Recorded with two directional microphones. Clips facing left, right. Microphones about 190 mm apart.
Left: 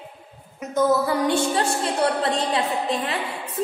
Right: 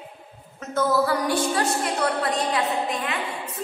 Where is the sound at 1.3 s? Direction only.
25° left (ahead or behind).